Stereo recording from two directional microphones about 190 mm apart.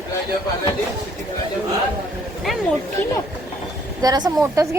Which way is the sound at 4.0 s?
20° right (ahead or behind).